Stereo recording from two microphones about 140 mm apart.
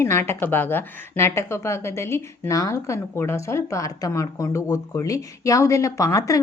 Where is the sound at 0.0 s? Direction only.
20° left (ahead or behind).